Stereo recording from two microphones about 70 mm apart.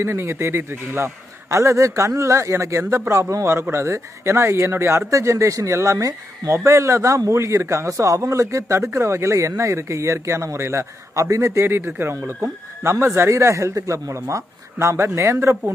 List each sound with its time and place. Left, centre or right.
0.0 s a man's voice: right
5.1 s speech: right
11.6 s a man's voice: right